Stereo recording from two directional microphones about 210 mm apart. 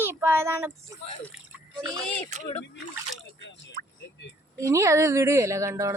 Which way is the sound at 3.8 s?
40° right (ahead or behind).